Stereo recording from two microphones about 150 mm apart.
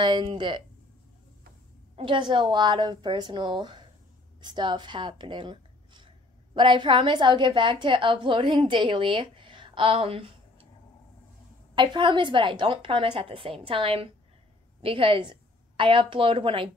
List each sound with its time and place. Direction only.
0.0 s a woman's voice: 30° right (ahead or behind)
2.0 s a woman's voice: 35° right (ahead or behind)
11.7 s a woman's voice: 30° right (ahead or behind)